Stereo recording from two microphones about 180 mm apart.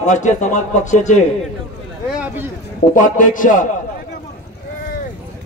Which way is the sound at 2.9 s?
45° left (ahead or behind).